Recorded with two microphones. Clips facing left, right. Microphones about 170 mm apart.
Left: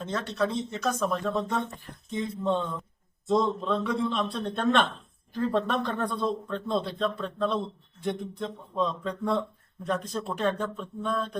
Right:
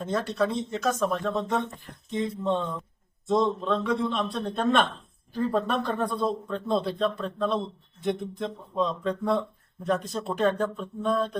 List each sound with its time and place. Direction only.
0.0 s speech: centre (ahead or behind)